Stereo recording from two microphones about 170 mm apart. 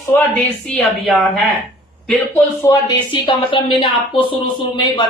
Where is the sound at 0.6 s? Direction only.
5° left (ahead or behind).